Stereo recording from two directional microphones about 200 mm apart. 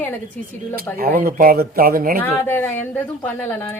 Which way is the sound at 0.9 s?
45° right (ahead or behind).